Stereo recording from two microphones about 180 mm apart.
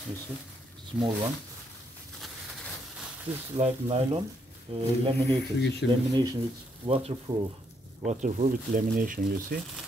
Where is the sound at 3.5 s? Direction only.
30° right (ahead or behind).